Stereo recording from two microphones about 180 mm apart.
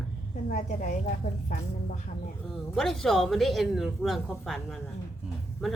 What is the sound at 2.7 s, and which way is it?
Speech, centre (ahead or behind).